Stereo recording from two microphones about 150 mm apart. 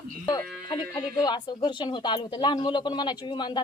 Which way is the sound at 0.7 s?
30° left (ahead or behind).